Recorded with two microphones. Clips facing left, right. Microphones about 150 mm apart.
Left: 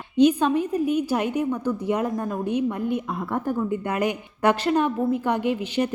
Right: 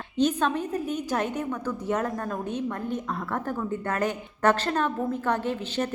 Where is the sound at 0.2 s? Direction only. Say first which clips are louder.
Left 6 dB; 10° left (ahead or behind).